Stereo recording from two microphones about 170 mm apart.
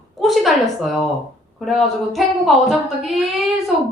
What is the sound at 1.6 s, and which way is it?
Speech, centre (ahead or behind).